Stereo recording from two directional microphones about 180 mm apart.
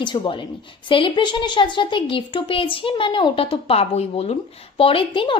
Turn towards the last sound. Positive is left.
turn(degrees=30)  # may be behind; listen again after turning